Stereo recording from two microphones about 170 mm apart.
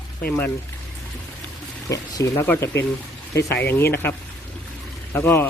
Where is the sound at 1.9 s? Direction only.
15° left (ahead or behind).